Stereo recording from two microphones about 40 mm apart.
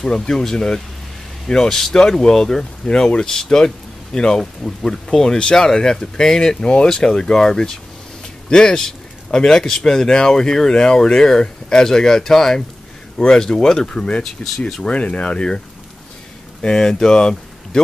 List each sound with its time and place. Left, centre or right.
0.0 s speech: centre
16.6 s speech: centre